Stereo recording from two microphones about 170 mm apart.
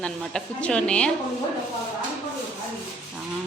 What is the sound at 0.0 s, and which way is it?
A woman's voice, 5° left (ahead or behind).